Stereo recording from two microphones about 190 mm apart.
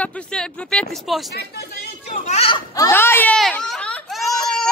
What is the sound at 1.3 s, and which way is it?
Speech, 60° left (ahead or behind).